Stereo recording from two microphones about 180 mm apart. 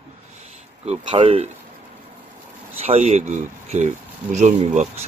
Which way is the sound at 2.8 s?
40° right (ahead or behind).